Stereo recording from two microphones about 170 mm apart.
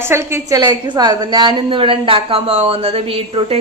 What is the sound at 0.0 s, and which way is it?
A woman's voice, 15° right (ahead or behind).